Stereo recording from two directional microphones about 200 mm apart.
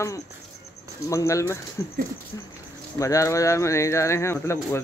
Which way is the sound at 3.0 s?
15° left (ahead or behind).